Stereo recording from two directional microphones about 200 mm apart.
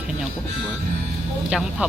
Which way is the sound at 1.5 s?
5° right (ahead or behind).